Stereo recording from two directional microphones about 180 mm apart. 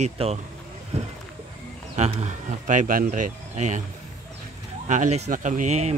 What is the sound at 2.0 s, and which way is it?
Speech, 35° right (ahead or behind).